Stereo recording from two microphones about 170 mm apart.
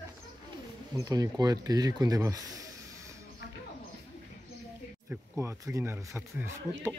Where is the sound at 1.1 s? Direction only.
20° right (ahead or behind).